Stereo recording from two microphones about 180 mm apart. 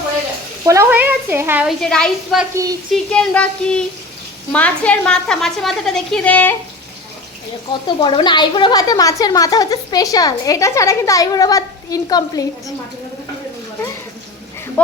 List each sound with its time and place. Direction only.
0.6 s speech: 15° right (ahead or behind)
1.8 s a woman's voice: 5° left (ahead or behind)
7.7 s speech: 25° left (ahead or behind)